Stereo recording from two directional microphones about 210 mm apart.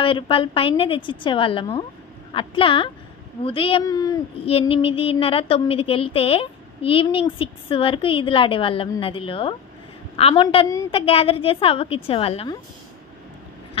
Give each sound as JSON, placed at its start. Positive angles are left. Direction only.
{"t": 0.0, "sound": "speech", "side_deg": 25}